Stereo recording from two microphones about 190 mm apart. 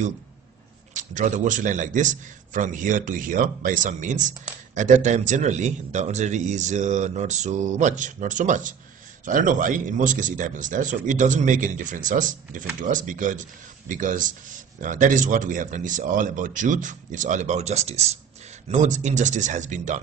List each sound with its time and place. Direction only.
0.9 s a man's voice: 40° right (ahead or behind)